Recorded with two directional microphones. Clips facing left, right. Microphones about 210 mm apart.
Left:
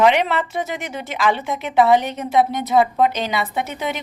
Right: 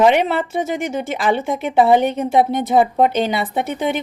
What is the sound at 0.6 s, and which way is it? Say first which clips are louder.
A woman's voice: right 6 dB; 45° right (ahead or behind).